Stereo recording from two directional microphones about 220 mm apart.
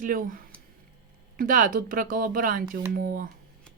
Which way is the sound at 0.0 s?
40° right (ahead or behind).